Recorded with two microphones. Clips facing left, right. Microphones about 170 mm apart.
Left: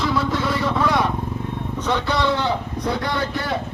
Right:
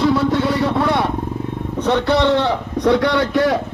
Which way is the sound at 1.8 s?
65° right (ahead or behind).